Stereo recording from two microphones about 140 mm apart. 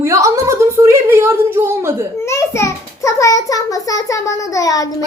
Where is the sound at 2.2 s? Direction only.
20° left (ahead or behind).